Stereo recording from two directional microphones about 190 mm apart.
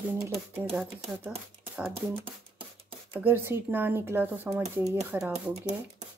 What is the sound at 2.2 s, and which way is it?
Beatboxing, 30° right (ahead or behind).